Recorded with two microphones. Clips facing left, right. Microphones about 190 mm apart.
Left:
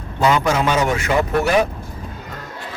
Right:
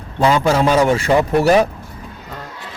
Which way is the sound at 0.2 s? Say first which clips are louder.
Right 3 dB; 30° right (ahead or behind).